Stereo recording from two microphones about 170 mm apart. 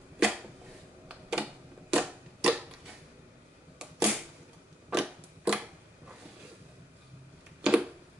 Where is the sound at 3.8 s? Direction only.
5° right (ahead or behind).